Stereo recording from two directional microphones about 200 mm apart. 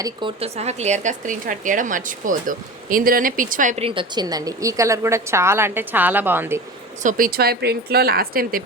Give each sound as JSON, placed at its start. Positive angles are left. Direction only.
{"t": 0.0, "sound": "speech", "side_deg": -25}
{"t": 7.0, "sound": "a woman's voice", "side_deg": -40}